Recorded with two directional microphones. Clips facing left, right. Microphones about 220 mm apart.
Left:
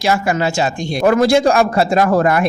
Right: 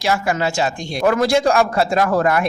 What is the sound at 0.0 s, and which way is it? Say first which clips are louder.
A man's voice: left 3 dB; 20° left (ahead or behind).